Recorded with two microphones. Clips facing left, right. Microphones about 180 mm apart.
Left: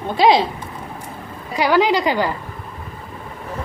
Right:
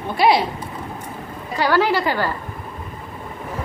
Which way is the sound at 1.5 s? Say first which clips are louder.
Left 2 dB; 15° left (ahead or behind).